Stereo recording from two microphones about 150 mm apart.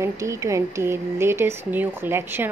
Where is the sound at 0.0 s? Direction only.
20° right (ahead or behind).